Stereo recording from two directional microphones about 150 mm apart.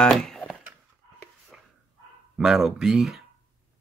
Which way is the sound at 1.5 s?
5° right (ahead or behind).